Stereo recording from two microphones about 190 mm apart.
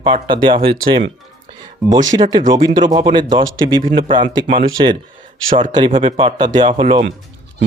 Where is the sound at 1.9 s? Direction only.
20° right (ahead or behind).